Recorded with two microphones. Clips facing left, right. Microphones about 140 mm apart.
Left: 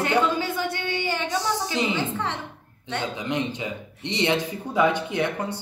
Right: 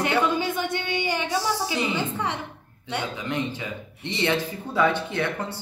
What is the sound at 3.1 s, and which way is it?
Speech, 20° left (ahead or behind).